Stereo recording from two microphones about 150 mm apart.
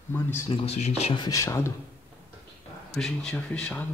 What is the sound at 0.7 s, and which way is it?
Speech, 45° left (ahead or behind).